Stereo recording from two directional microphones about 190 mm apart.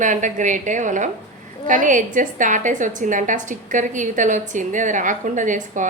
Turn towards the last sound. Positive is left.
turn(degrees=-40)  # may be behind; listen again after turning